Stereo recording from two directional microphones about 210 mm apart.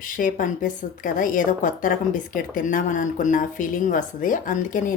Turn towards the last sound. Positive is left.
turn(degrees=40)  # may be behind; listen again after turning